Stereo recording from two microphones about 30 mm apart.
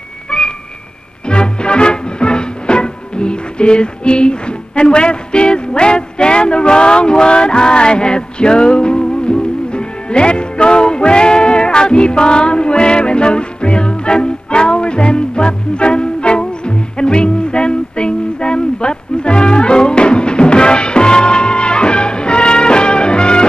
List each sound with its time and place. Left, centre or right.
0.3 s music: left